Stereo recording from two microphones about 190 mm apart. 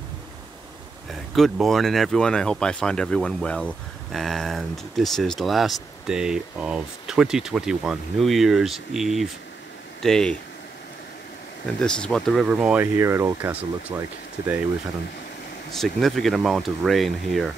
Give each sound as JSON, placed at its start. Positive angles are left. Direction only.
{"t": 1.3, "sound": "speech", "side_deg": 0}
{"t": 11.8, "sound": "speech", "side_deg": 5}
{"t": 15.7, "sound": "speech", "side_deg": 0}